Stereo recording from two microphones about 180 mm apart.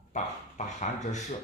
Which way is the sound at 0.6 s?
40° left (ahead or behind).